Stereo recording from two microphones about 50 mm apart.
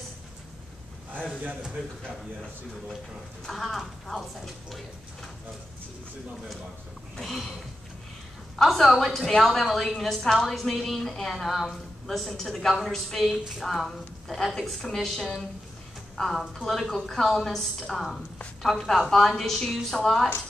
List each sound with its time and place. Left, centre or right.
3.4 s a woman's voice: centre
7.2 s a woman's voice: centre
8.6 s a woman's voice: centre